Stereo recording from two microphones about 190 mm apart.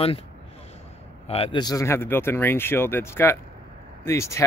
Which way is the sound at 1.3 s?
30° left (ahead or behind).